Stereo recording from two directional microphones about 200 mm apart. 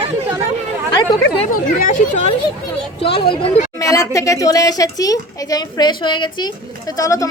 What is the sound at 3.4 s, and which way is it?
Speech, 30° left (ahead or behind).